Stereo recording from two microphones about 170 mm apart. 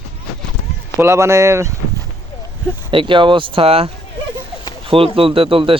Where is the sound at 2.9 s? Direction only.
30° right (ahead or behind).